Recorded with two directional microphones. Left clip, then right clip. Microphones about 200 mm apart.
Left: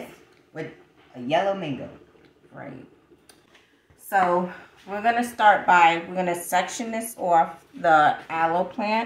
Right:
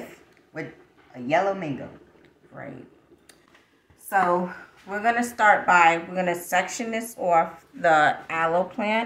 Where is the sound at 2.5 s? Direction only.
25° right (ahead or behind).